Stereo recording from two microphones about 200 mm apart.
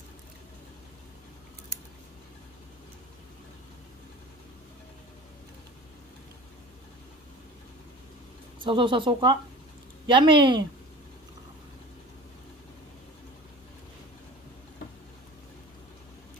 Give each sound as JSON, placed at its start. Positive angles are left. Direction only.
{"t": 8.6, "sound": "speech", "side_deg": -25}